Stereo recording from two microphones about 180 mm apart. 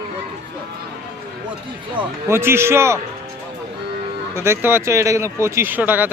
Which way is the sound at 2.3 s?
15° right (ahead or behind).